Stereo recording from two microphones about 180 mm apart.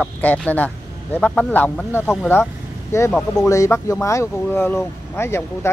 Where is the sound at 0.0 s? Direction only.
5° left (ahead or behind).